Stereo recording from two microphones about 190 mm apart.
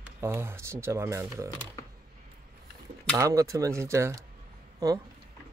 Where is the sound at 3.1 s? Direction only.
15° right (ahead or behind).